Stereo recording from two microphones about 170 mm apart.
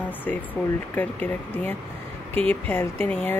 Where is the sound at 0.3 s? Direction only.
10° left (ahead or behind).